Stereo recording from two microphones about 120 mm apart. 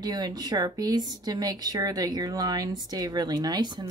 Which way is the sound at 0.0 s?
35° right (ahead or behind).